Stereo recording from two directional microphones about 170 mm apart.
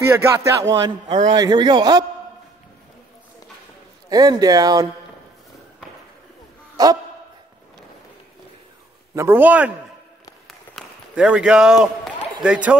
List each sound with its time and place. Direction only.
0.0 s speech: 15° right (ahead or behind)
4.1 s speech: 20° right (ahead or behind)
6.8 s speech: 20° right (ahead or behind)
9.1 s speech: 15° right (ahead or behind)
11.1 s a man's voice: 5° right (ahead or behind)